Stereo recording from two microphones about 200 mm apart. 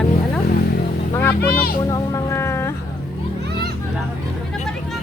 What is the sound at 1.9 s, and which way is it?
Music, 15° left (ahead or behind).